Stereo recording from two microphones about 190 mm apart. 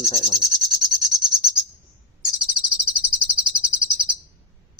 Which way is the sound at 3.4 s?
5° right (ahead or behind).